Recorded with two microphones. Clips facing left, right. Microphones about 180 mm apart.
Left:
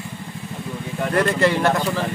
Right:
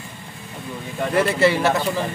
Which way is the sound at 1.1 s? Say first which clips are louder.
Right 1 dB; 5° right (ahead or behind).